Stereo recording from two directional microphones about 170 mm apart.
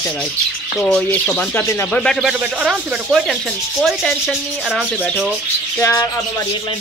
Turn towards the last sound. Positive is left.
turn(degrees=20)  # may be behind; listen again after turning